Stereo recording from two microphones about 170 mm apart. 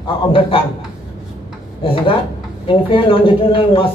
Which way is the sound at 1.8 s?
30° left (ahead or behind).